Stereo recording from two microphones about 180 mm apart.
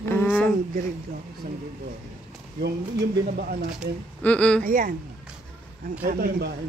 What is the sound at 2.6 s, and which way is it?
Speech, 60° right (ahead or behind).